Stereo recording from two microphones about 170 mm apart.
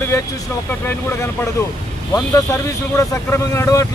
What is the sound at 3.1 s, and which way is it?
Speech, 15° left (ahead or behind).